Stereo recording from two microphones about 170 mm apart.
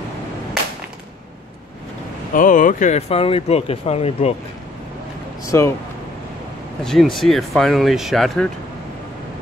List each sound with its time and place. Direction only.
2.3 s speech: 50° left (ahead or behind)
5.5 s speech: 15° left (ahead or behind)
6.8 s speech: centre (ahead or behind)